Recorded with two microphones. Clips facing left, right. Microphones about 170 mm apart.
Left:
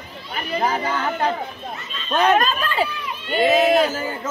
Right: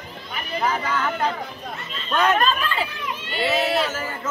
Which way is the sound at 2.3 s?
40° left (ahead or behind).